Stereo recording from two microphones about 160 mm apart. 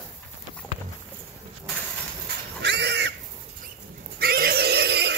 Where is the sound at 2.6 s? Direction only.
90° right.